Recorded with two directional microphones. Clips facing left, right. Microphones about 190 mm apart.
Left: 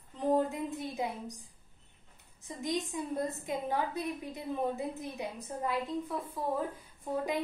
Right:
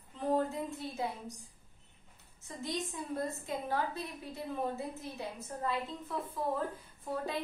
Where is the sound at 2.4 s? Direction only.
15° left (ahead or behind).